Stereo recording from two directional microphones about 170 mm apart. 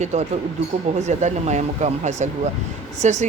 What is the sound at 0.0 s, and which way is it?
Speech, 45° right (ahead or behind).